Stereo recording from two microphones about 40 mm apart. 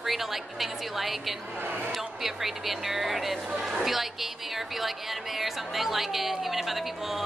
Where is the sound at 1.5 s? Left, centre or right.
Right.